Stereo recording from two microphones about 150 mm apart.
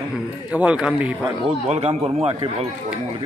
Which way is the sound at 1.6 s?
45° right (ahead or behind).